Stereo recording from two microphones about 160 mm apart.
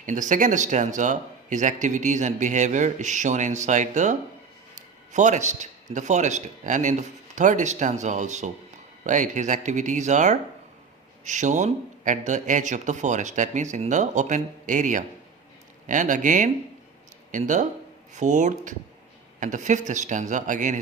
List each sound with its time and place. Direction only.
0.0 s a man's voice: 50° right (ahead or behind)